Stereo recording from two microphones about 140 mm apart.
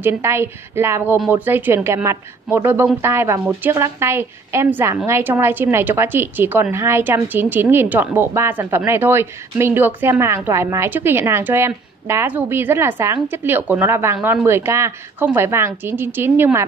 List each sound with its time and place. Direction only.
0.0 s a woman's voice: 15° right (ahead or behind)